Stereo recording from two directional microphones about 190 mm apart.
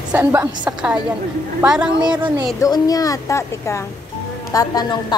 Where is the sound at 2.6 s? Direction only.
20° left (ahead or behind).